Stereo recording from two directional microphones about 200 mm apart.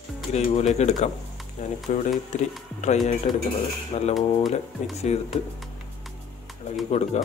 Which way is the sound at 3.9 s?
35° left (ahead or behind).